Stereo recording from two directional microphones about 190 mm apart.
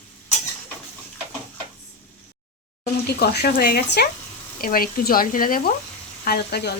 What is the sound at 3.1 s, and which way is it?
Speech, 60° left (ahead or behind).